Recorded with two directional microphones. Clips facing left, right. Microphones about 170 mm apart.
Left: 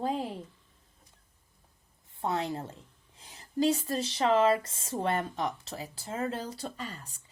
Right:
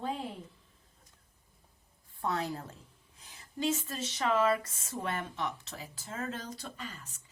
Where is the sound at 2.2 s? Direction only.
25° left (ahead or behind).